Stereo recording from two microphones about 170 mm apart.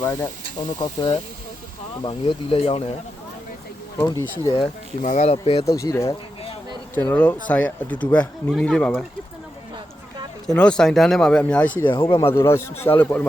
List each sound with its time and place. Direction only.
0.0 s speech: 10° left (ahead or behind)
0.8 s speech: 30° left (ahead or behind)
3.9 s speech: 15° left (ahead or behind)
4.5 s speech: 40° left (ahead or behind)
5.6 s speech: 20° left (ahead or behind)
10.4 s speech: 5° left (ahead or behind)